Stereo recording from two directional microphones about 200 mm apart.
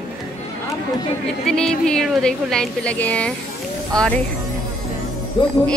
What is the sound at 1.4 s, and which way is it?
A woman's voice, 5° left (ahead or behind).